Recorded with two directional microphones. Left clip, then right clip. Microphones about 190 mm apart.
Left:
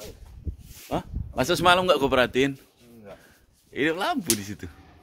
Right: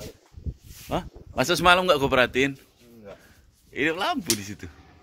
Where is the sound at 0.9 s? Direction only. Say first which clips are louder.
Right 1 dB; centre (ahead or behind).